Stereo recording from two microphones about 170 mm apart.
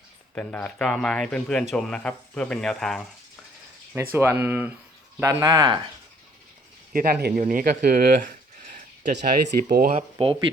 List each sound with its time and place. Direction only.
0.3 s speech: 5° left (ahead or behind)
4.1 s speech: 15° right (ahead or behind)
6.9 s speech: 60° right (ahead or behind)
9.9 s speech: 35° right (ahead or behind)